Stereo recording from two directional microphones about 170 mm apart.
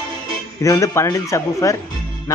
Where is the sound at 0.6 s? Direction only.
20° left (ahead or behind).